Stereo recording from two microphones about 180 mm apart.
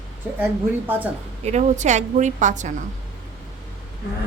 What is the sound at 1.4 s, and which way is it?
A woman's voice, 40° right (ahead or behind).